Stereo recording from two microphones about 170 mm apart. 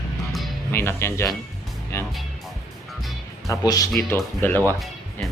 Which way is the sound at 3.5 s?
20° left (ahead or behind).